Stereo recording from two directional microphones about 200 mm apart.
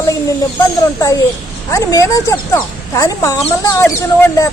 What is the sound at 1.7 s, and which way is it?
Speech, 15° left (ahead or behind).